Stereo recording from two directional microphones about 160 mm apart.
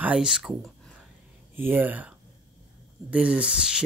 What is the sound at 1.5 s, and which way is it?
Speech, 10° right (ahead or behind).